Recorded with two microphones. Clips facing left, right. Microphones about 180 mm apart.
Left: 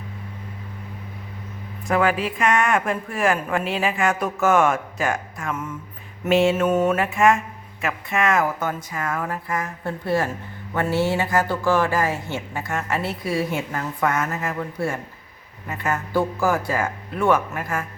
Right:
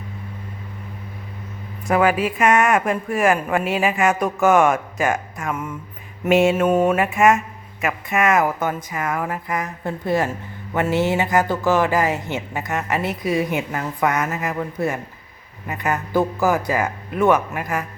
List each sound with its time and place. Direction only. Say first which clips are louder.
1.9 s speech: right 3 dB; 5° right (ahead or behind)